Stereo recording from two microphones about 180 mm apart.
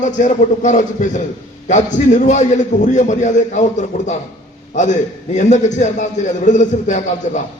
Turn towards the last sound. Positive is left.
turn(degrees=40)  # may be behind; listen again after turning